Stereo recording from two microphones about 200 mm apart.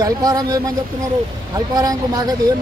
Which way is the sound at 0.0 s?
20° right (ahead or behind).